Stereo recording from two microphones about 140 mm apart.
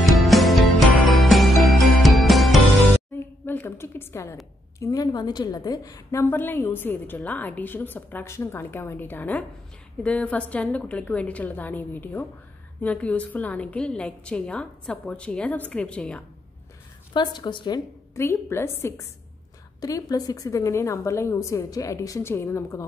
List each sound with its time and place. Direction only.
0.0 s music: centre (ahead or behind)
3.4 s a sound: 15° left (ahead or behind)
4.7 s a woman's voice: 25° left (ahead or behind)
6.2 s a woman's voice: 15° left (ahead or behind)
17.1 s a woman's voice: 30° left (ahead or behind)